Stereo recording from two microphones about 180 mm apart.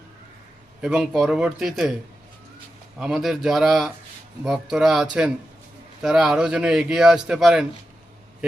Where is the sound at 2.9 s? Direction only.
Centre (ahead or behind).